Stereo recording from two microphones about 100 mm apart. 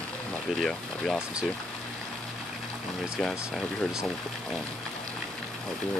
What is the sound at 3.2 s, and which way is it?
Speech, 5° left (ahead or behind).